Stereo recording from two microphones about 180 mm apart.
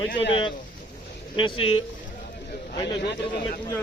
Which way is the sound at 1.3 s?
30° left (ahead or behind).